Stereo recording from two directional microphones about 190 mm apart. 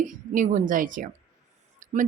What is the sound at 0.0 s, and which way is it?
Speech, 45° right (ahead or behind).